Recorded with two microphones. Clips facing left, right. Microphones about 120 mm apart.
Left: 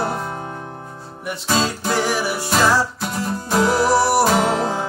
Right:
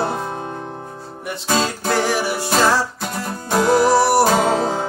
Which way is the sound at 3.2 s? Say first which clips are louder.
Even; 50° right (ahead or behind).